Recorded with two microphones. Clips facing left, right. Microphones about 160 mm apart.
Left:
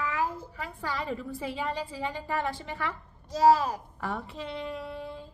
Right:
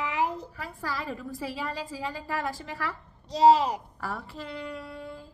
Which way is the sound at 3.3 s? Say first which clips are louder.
Right 2 dB; 20° right (ahead or behind).